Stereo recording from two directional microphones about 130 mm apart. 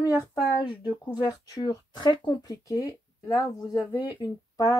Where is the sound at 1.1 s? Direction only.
30° left (ahead or behind).